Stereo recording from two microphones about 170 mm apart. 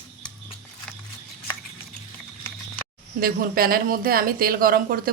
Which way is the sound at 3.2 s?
60° right (ahead or behind).